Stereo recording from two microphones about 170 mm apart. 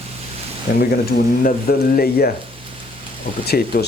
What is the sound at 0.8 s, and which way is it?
Speech, 65° left (ahead or behind).